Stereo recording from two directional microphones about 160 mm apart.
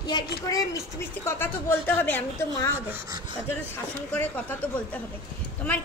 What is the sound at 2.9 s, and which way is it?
Speech, 15° right (ahead or behind).